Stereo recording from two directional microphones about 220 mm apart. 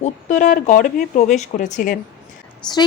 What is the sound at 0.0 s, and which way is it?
Speech, 35° left (ahead or behind).